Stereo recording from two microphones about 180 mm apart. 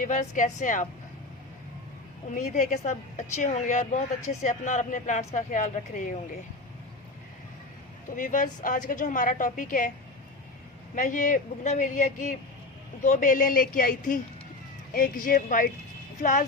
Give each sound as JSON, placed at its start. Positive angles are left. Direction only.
{"t": 0.0, "sound": "a woman's voice", "side_deg": 45}
{"t": 2.3, "sound": "a woman's voice", "side_deg": 45}
{"t": 8.1, "sound": "a woman's voice", "side_deg": 45}
{"t": 10.9, "sound": "a woman's voice", "side_deg": 45}